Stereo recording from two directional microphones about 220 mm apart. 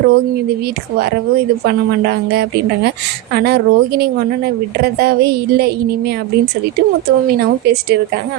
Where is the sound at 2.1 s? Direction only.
50° right (ahead or behind).